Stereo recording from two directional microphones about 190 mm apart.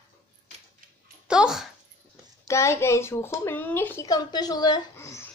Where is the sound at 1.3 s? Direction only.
5° right (ahead or behind).